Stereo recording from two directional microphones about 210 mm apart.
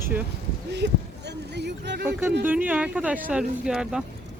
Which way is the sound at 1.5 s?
55° right (ahead or behind).